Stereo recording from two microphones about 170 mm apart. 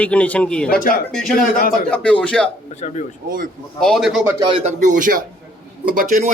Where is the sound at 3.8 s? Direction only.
Centre (ahead or behind).